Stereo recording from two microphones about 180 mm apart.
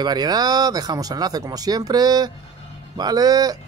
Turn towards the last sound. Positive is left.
turn(degrees=-20)  # may be behind; listen again after turning